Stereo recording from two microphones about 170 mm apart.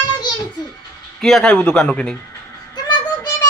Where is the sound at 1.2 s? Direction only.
Centre (ahead or behind).